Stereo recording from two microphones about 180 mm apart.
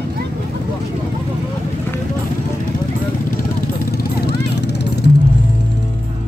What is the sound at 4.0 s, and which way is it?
Vehicle, 65° left (ahead or behind).